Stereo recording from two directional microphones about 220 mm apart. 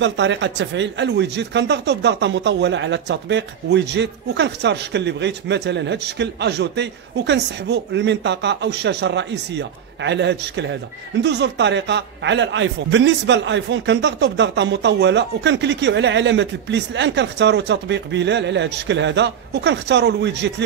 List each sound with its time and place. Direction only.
0.0 s speech: 55° right (ahead or behind)